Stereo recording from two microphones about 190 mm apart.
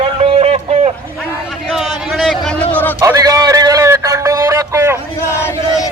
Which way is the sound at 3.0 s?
20° right (ahead or behind).